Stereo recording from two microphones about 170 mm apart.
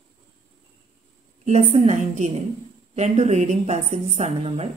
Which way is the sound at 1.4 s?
40° right (ahead or behind).